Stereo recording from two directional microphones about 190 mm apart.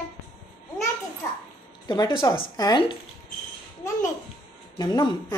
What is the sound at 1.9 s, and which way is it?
Speech, 25° left (ahead or behind).